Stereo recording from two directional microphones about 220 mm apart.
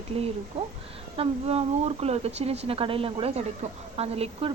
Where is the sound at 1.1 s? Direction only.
25° right (ahead or behind).